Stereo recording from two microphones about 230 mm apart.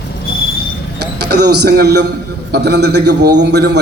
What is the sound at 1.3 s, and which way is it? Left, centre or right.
A man's voice, right.